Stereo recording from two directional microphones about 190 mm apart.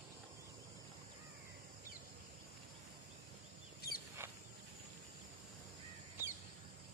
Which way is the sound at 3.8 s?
50° left (ahead or behind).